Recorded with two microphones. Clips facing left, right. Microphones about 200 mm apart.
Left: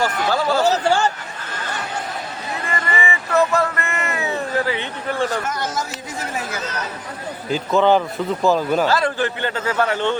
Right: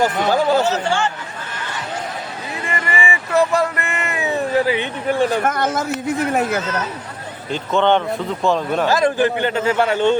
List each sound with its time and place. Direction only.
0.0 s a man's voice: 15° right (ahead or behind)
0.6 s a sound: 40° left (ahead or behind)
2.6 s a sound: 15° right (ahead or behind)
5.4 s speech: 55° right (ahead or behind)
7.5 s speech: 5° left (ahead or behind)
8.9 s a man's voice: 15° right (ahead or behind)